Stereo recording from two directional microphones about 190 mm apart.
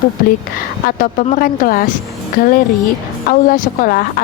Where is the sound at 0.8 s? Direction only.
45° left (ahead or behind).